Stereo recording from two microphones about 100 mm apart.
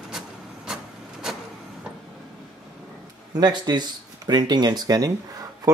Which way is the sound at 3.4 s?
45° right (ahead or behind).